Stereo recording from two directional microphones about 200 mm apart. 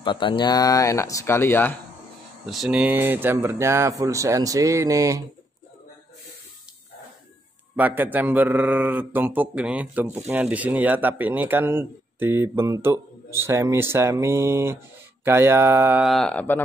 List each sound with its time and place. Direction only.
0.0 s speech: 25° left (ahead or behind)
2.4 s a man's voice: centre (ahead or behind)
7.7 s a man's voice: 10° right (ahead or behind); by 16.6 s 10° left (ahead or behind)